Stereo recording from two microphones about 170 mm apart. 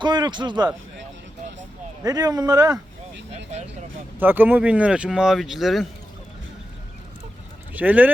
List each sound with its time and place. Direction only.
0.0 s speech: 25° right (ahead or behind)
2.0 s speech: 20° right (ahead or behind)
4.2 s speech: 10° right (ahead or behind)
7.7 s speech: 10° right (ahead or behind)